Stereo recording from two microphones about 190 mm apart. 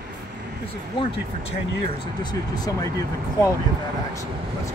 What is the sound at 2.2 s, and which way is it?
Speech, 20° left (ahead or behind).